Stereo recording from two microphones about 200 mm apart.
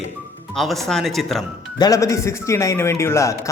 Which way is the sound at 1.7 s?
20° left (ahead or behind).